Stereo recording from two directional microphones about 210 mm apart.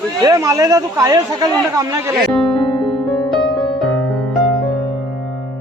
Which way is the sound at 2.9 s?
Centre (ahead or behind).